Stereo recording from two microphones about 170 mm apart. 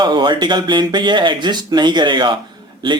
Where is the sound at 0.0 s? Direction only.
25° right (ahead or behind).